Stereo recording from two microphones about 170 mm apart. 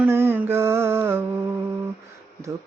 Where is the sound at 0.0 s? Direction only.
15° right (ahead or behind).